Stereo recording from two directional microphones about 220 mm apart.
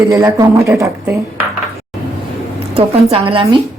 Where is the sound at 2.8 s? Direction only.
25° right (ahead or behind).